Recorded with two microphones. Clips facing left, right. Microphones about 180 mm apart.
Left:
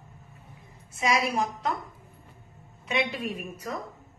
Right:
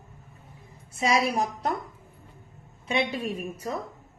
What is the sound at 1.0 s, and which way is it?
Speech, 35° right (ahead or behind).